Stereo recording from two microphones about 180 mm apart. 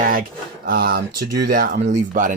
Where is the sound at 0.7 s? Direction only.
60° right (ahead or behind); by 2.3 s 45° right (ahead or behind).